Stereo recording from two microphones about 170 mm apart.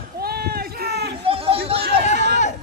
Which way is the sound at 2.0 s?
45° left (ahead or behind).